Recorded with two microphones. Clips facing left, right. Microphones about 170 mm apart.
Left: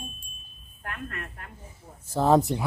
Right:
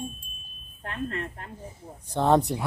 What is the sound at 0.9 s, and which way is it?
Smoke detector, 25° right (ahead or behind).